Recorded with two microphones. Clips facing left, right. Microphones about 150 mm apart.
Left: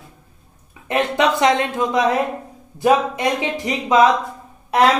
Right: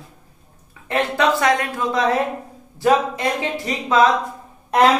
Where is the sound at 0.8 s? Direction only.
20° left (ahead or behind).